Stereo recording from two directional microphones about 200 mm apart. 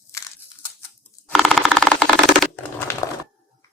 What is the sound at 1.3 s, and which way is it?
Typewriter, centre (ahead or behind).